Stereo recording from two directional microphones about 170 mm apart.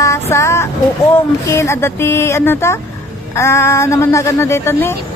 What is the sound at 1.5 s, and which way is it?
Speech, 15° left (ahead or behind).